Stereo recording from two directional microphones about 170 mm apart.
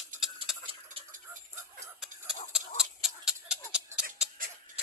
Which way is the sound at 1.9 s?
5° right (ahead or behind).